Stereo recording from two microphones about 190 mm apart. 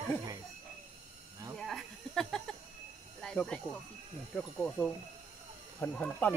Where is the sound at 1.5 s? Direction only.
Centre (ahead or behind).